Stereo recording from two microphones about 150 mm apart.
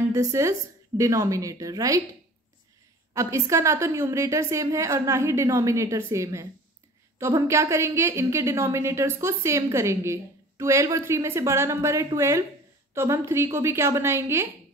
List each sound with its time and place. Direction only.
0.1 s a woman's voice: 20° right (ahead or behind)
3.1 s a woman's voice: 20° right (ahead or behind)